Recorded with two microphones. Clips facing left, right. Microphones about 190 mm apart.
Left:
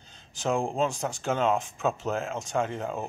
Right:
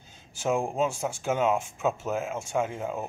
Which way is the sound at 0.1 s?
10° right (ahead or behind).